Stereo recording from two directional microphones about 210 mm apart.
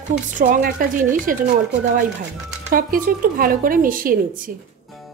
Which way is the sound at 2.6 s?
40° right (ahead or behind).